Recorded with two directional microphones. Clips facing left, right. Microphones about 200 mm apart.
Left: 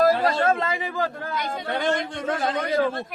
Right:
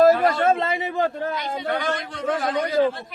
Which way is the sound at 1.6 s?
25° left (ahead or behind).